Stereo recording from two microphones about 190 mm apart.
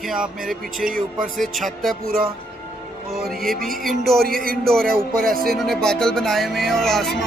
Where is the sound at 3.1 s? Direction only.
Centre (ahead or behind).